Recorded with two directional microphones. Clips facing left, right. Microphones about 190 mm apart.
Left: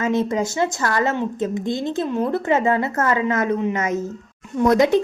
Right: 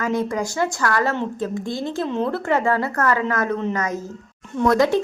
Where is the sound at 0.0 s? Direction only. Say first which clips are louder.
Left 2 dB; 25° left (ahead or behind).